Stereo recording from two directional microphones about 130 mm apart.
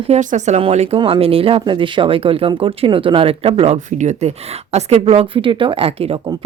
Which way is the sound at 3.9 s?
65° right (ahead or behind).